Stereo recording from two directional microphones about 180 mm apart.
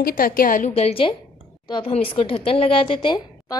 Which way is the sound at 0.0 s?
55° left (ahead or behind).